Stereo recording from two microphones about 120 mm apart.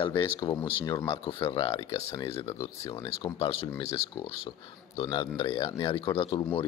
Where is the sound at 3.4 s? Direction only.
50° left (ahead or behind).